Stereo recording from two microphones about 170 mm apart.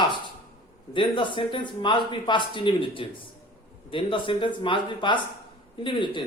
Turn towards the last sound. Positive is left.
turn(degrees=30)  # may be behind; listen again after turning